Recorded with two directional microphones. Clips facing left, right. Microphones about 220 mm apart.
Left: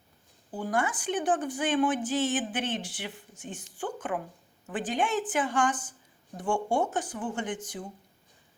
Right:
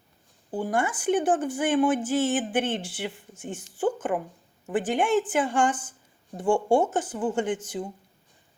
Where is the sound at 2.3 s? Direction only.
55° right (ahead or behind).